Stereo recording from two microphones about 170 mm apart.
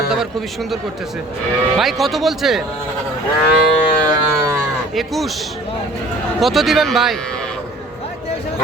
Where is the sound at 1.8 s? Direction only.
Centre (ahead or behind).